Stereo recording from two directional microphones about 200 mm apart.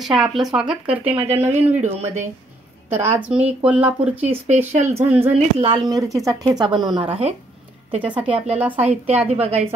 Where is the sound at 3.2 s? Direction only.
5° right (ahead or behind).